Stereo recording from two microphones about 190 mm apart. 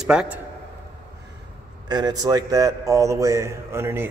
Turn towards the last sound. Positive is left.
turn(degrees=-10)  # may be behind; listen again after turning